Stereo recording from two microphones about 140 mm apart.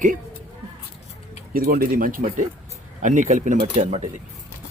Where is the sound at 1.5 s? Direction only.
90° right.